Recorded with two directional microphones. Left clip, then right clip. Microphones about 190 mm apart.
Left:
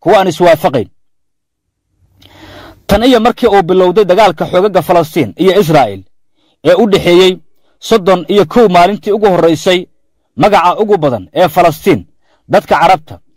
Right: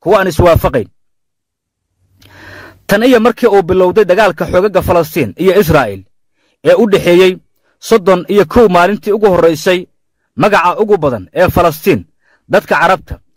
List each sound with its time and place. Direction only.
0.0 s a man's voice: 15° right (ahead or behind)
2.1 s a man's voice: 20° right (ahead or behind)